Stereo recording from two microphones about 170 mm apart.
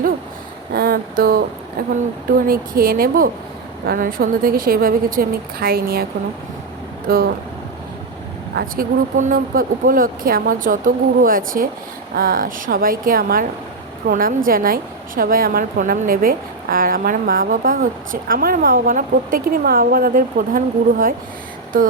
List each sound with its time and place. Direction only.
0.7 s a sound: 60° right (ahead or behind)
1.9 s a woman's voice: 60° right (ahead or behind)
7.1 s a woman's voice: 60° right (ahead or behind)
8.5 s a woman's voice: 55° right (ahead or behind)